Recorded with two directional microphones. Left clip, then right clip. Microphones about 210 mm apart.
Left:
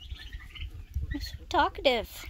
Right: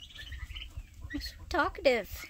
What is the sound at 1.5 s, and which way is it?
Speech, 5° left (ahead or behind).